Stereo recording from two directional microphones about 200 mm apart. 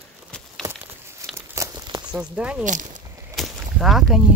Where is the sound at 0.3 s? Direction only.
5° left (ahead or behind).